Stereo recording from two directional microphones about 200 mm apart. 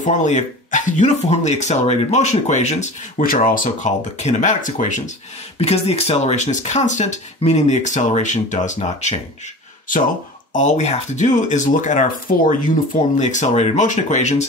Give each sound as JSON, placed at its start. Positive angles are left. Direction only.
{"t": 0.0, "sound": "speech", "side_deg": 35}
{"t": 10.5, "sound": "speech", "side_deg": 40}